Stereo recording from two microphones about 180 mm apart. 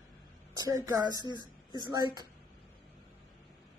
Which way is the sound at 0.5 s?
20° right (ahead or behind).